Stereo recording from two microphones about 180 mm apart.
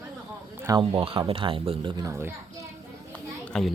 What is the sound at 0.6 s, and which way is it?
Speech, 20° right (ahead or behind).